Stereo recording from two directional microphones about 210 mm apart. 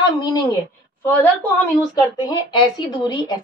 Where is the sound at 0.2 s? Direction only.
20° left (ahead or behind).